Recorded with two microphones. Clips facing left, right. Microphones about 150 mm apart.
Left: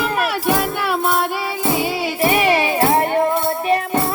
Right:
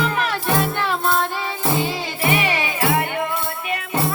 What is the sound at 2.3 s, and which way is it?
Music, 40° left (ahead or behind).